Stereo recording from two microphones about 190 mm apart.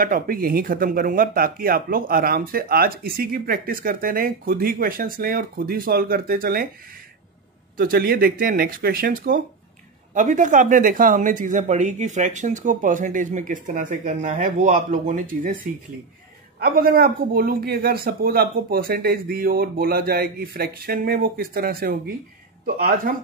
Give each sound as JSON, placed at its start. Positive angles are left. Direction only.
{"t": 0.0, "sound": "speech", "side_deg": -50}
{"t": 7.7, "sound": "speech", "side_deg": -50}
{"t": 16.5, "sound": "speech", "side_deg": -50}